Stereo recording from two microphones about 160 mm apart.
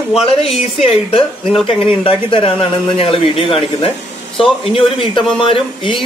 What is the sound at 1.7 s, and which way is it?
Speech, 35° left (ahead or behind).